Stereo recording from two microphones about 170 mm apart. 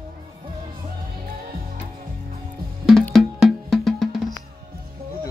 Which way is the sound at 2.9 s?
Centre (ahead or behind).